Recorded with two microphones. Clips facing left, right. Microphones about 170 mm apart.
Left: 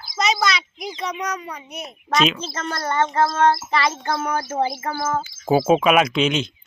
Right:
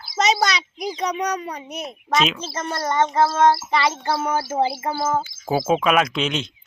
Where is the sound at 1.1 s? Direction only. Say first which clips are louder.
Right 3 dB; 35° right (ahead or behind).